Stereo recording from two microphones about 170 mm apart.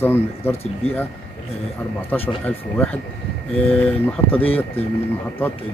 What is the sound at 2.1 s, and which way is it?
Speech, 10° left (ahead or behind).